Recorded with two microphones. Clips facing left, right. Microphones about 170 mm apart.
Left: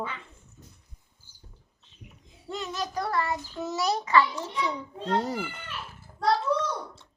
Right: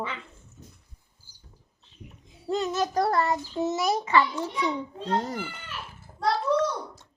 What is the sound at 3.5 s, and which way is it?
Speech, 20° right (ahead or behind).